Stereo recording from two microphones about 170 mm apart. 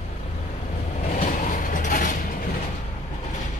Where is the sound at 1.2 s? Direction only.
50° left (ahead or behind).